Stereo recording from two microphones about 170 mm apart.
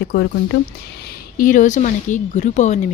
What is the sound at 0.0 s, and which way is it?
Speech, 75° left (ahead or behind).